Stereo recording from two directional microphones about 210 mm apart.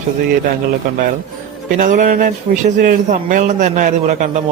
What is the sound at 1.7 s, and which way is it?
A man's voice, 40° right (ahead or behind).